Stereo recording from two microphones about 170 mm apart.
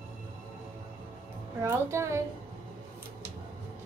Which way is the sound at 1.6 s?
15° right (ahead or behind).